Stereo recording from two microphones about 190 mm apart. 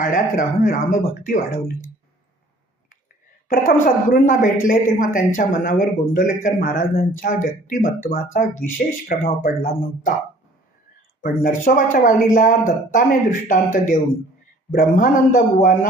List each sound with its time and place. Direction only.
0.0 s speech: 45° left (ahead or behind)
3.5 s speech: 45° left (ahead or behind)
11.2 s speech: 45° left (ahead or behind)